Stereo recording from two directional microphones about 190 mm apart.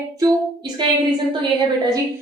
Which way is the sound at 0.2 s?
20° right (ahead or behind).